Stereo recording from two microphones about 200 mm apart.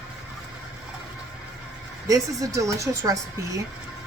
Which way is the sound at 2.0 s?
15° right (ahead or behind).